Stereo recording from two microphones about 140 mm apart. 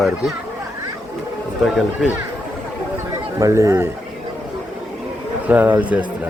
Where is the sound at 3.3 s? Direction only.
20° right (ahead or behind).